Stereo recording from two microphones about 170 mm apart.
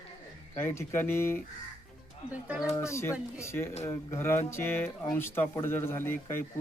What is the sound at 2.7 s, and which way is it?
Speech, 15° left (ahead or behind).